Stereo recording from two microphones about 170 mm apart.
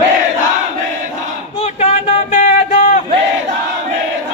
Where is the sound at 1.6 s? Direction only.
40° left (ahead or behind).